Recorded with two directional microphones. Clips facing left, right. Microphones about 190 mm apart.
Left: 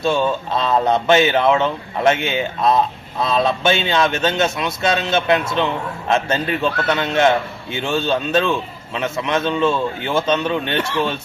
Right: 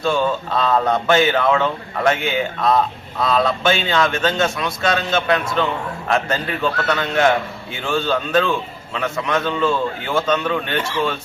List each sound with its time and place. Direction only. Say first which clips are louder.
0.0 s a man's voice: left 1 dB; 25° left (ahead or behind)